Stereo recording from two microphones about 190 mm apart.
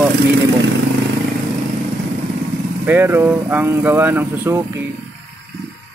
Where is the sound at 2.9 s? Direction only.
10° right (ahead or behind).